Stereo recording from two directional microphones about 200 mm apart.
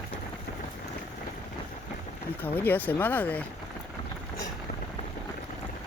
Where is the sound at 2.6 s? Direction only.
10° left (ahead or behind).